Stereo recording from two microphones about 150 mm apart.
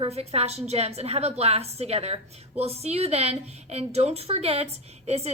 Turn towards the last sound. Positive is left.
turn(degrees=-45)  # may be behind; listen again after turning